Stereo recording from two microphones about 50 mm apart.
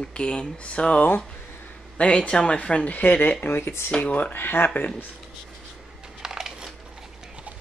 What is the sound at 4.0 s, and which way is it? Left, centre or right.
Speech, left.